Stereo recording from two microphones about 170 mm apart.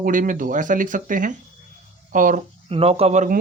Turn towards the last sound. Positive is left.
turn(degrees=-45)  # may be behind; listen again after turning